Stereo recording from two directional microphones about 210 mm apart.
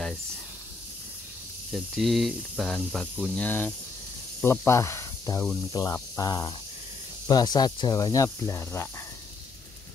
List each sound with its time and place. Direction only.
1.7 s speech: centre (ahead or behind)